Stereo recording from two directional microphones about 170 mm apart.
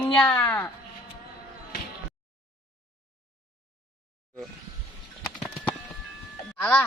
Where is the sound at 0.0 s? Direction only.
5° left (ahead or behind).